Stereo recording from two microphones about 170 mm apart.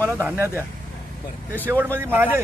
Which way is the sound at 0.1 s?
15° right (ahead or behind).